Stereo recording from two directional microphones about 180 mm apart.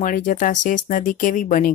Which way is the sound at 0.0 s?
45° left (ahead or behind).